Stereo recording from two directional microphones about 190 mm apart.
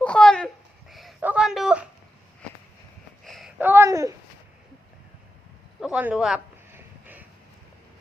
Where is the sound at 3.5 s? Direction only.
10° right (ahead or behind).